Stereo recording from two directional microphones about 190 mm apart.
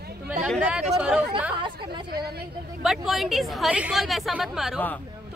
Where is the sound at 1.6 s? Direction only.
25° right (ahead or behind).